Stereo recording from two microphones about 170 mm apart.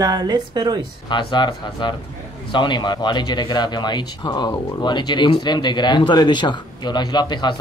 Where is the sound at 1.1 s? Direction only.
25° left (ahead or behind).